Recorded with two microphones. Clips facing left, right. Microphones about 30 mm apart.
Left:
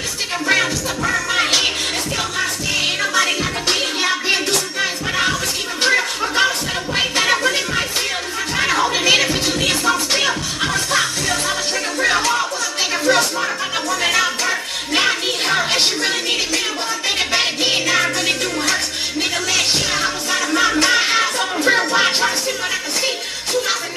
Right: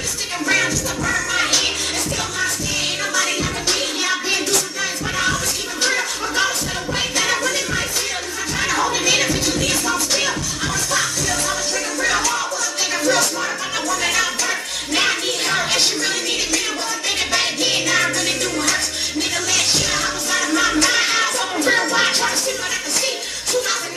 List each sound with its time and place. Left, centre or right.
0.5 s music: left
5.8 s a sound: left
7.0 s music: left; by 22.3 s centre